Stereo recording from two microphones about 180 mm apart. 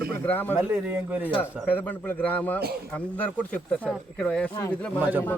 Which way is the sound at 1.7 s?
10° left (ahead or behind).